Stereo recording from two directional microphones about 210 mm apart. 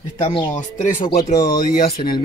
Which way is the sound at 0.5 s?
35° left (ahead or behind).